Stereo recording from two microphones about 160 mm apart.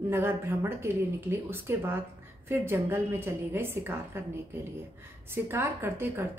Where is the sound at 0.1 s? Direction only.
15° right (ahead or behind).